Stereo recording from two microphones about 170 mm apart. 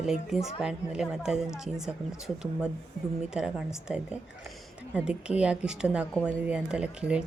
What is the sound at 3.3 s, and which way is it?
Speech, 5° right (ahead or behind).